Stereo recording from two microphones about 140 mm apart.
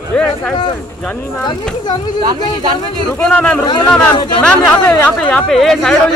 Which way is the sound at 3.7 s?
35° left (ahead or behind).